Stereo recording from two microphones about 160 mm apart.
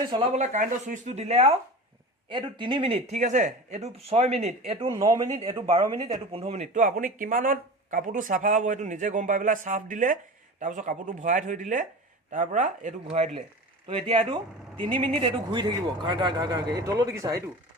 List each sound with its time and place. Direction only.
0.3 s speech: 50° right (ahead or behind)
2.3 s speech: 30° right (ahead or behind)
4.9 s a man's voice: 20° right (ahead or behind)
5.2 s speech: 40° right (ahead or behind)
6.8 s speech: 60° right (ahead or behind)
13.1 s a man's voice: 40° right (ahead or behind); by 17.3 s 20° right (ahead or behind)